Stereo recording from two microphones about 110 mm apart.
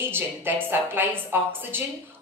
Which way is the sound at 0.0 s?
20° right (ahead or behind).